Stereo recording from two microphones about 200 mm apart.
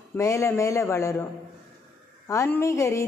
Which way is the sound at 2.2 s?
15° left (ahead or behind).